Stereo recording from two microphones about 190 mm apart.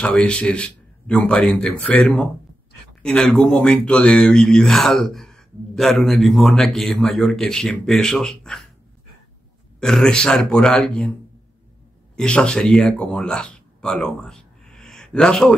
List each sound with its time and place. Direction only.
0.0 s speech: 5° left (ahead or behind)
9.8 s speech: 5° left (ahead or behind)
12.2 s a man's voice: 5° left (ahead or behind)